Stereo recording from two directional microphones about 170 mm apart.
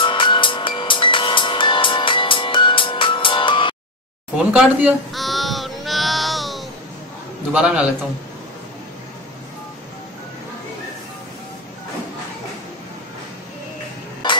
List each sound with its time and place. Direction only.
0.0 s music: 30° left (ahead or behind)
4.5 s music: 10° right (ahead or behind)
7.5 s a man's voice: 5° right (ahead or behind)